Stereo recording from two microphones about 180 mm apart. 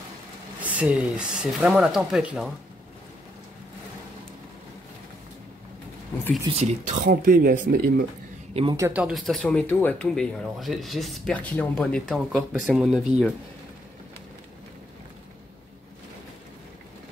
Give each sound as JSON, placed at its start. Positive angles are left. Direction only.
{"t": 0.6, "sound": "speech", "side_deg": -10}
{"t": 6.5, "sound": "speech", "side_deg": -40}
{"t": 8.7, "sound": "speech", "side_deg": -10}